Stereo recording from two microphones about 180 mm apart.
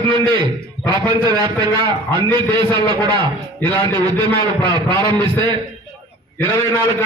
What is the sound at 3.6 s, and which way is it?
Speech, 10° left (ahead or behind).